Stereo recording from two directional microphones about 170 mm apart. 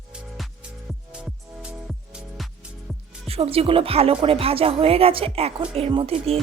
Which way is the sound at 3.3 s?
35° right (ahead or behind).